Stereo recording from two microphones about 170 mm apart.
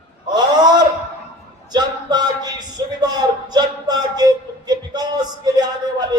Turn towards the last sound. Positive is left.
turn(degrees=-25)  # may be behind; listen again after turning